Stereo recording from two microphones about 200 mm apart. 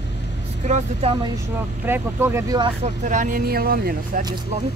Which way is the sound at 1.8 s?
10° right (ahead or behind).